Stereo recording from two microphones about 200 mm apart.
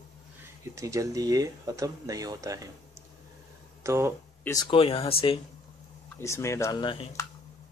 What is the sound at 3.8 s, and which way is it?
Speech, 15° right (ahead or behind).